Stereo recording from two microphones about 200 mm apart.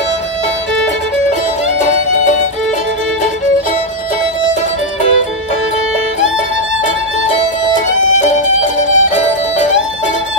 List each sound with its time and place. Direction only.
8.2 s music: 35° left (ahead or behind)